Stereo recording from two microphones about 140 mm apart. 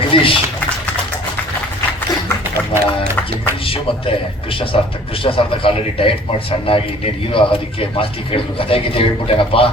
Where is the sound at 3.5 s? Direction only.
40° left (ahead or behind).